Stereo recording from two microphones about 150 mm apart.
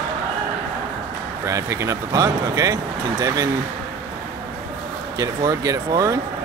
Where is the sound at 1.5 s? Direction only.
20° right (ahead or behind).